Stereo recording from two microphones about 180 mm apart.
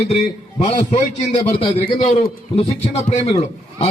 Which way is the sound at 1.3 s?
35° left (ahead or behind).